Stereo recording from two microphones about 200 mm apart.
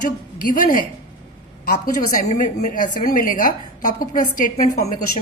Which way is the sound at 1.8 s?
40° left (ahead or behind).